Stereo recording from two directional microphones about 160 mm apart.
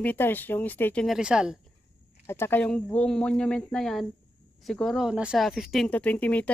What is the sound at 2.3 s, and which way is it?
A woman's voice, 15° left (ahead or behind).